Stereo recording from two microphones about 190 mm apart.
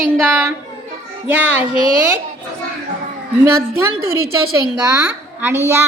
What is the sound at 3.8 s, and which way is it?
A woman's voice, 15° right (ahead or behind).